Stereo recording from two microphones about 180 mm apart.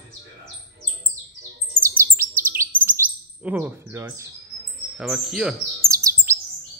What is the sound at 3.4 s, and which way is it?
Speech, 10° right (ahead or behind).